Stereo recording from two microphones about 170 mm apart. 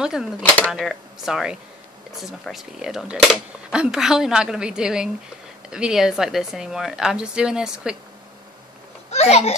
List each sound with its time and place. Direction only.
0.0 s a woman's voice: 5° right (ahead or behind)
9.1 s a child's voice: 40° left (ahead or behind)